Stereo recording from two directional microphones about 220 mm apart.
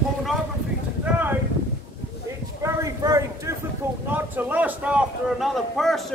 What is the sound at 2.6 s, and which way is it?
Clip-clop, 15° right (ahead or behind).